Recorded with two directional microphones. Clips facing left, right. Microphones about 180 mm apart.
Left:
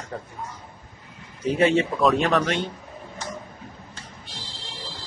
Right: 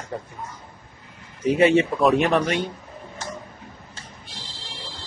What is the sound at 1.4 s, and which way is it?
Speech, 10° right (ahead or behind).